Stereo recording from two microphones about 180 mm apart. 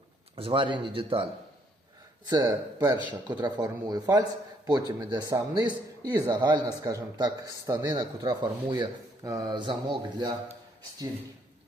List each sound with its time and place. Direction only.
0.3 s a man's voice: 30° right (ahead or behind)
2.3 s a man's voice: 25° right (ahead or behind)